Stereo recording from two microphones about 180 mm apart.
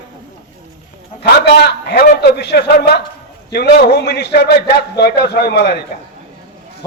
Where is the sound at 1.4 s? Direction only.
65° left (ahead or behind).